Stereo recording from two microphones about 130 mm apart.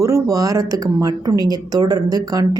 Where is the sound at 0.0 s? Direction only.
25° right (ahead or behind).